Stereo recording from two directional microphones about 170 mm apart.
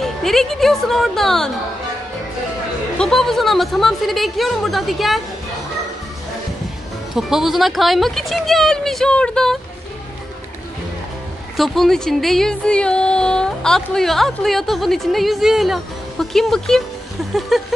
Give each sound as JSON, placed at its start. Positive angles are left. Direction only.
{"t": 0.0, "sound": "speech", "side_deg": 0}
{"t": 3.0, "sound": "speech", "side_deg": 5}
{"t": 7.2, "sound": "speech", "side_deg": 0}
{"t": 11.5, "sound": "speech", "side_deg": 0}